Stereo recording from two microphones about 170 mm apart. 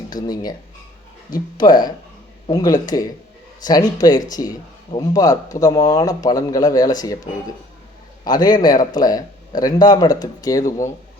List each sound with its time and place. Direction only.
0.1 s speech: 20° left (ahead or behind)
8.2 s speech: 25° left (ahead or behind)